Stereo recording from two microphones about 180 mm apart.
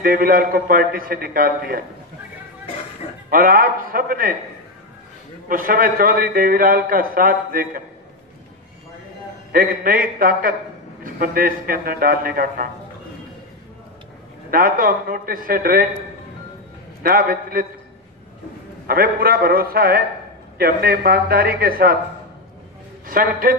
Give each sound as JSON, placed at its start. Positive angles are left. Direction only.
{"t": 0.0, "sound": "a man's voice", "side_deg": -50}
{"t": 3.3, "sound": "a man's voice", "side_deg": -50}
{"t": 5.5, "sound": "a man's voice", "side_deg": -50}
{"t": 9.5, "sound": "a man's voice", "side_deg": -55}
{"t": 14.5, "sound": "a man's voice", "side_deg": -50}
{"t": 17.0, "sound": "a man's voice", "side_deg": -50}
{"t": 18.9, "sound": "speech", "side_deg": -55}
{"t": 23.0, "sound": "a man's voice", "side_deg": -55}